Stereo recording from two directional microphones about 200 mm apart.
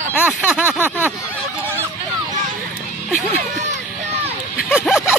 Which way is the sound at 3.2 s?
35° right (ahead or behind).